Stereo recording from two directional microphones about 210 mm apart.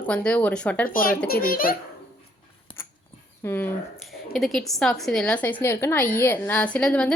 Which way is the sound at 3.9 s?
Centre (ahead or behind).